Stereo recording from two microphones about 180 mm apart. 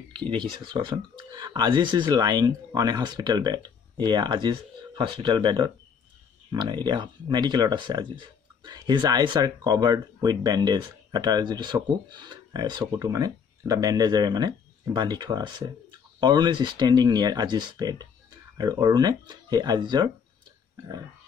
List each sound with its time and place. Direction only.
0.3 s speech: 25° right (ahead or behind)